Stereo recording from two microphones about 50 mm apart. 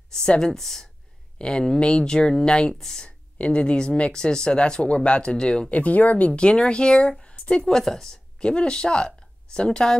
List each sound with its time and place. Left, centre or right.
0.1 s speech: centre
3.3 s speech: left
5.8 s speech: left
7.6 s speech: centre